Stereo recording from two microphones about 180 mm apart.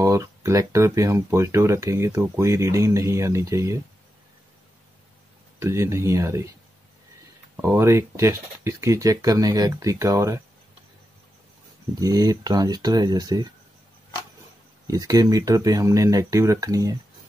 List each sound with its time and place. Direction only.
0.0 s speech: 15° right (ahead or behind)
5.6 s speech: 15° right (ahead or behind)
7.5 s speech: 15° right (ahead or behind)
12.0 s speech: 20° right (ahead or behind)
14.9 s speech: 20° right (ahead or behind)